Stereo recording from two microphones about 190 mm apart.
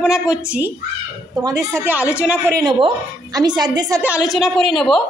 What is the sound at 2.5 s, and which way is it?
A woman's voice, 20° right (ahead or behind).